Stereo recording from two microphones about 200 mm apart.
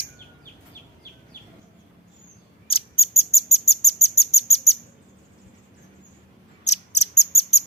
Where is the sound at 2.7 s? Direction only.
30° left (ahead or behind).